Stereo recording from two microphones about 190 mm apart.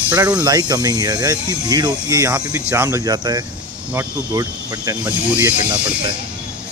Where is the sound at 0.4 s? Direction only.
20° right (ahead or behind).